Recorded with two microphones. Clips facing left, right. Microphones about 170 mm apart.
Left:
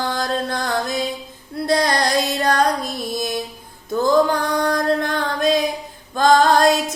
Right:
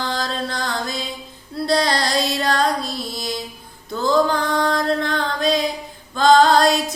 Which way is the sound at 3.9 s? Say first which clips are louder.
Left 2 dB; 20° left (ahead or behind).